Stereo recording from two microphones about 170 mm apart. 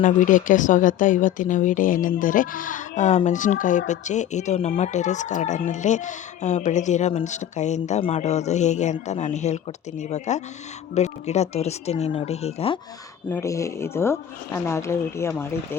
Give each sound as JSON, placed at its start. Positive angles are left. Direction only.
{"t": 0.0, "sound": "speech", "side_deg": 50}
{"t": 13.2, "sound": "speech", "side_deg": 15}